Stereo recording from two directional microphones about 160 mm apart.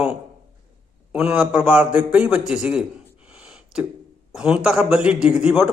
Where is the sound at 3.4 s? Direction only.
5° right (ahead or behind).